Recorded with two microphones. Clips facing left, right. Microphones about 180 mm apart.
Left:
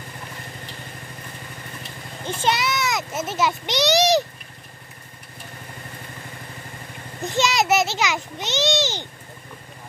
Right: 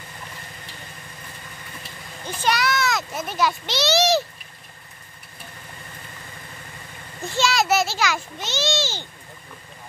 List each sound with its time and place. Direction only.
2.2 s a child's voice: 25° left (ahead or behind)
7.2 s a child's voice: 20° left (ahead or behind)